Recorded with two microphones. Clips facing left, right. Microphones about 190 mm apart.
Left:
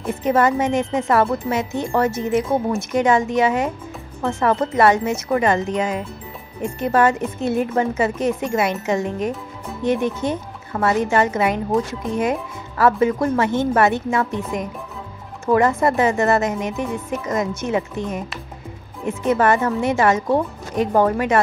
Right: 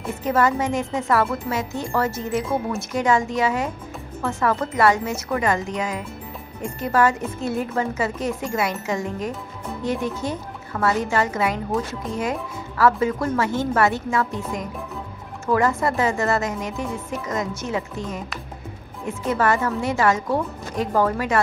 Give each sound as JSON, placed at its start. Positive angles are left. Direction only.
{"t": 0.2, "sound": "speech", "side_deg": 20}
{"t": 4.2, "sound": "speech", "side_deg": 30}
{"t": 19.3, "sound": "speech", "side_deg": 20}